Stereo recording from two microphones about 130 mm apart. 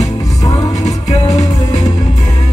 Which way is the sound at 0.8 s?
60° left (ahead or behind).